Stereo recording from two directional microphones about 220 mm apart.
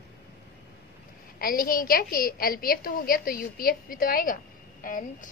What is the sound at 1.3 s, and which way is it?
A woman's voice, 40° left (ahead or behind).